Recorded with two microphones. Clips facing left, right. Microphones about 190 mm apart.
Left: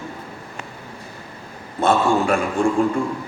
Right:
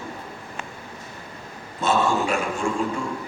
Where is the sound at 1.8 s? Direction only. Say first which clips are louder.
Left 4 dB; 55° left (ahead or behind).